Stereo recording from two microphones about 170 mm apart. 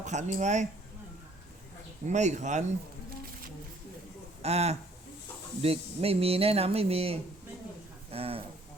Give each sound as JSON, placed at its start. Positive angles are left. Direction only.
{"t": 0.0, "sound": "speech", "side_deg": -45}
{"t": 2.0, "sound": "speech", "side_deg": -45}
{"t": 4.4, "sound": "speech", "side_deg": -40}
{"t": 8.1, "sound": "a sound", "side_deg": -35}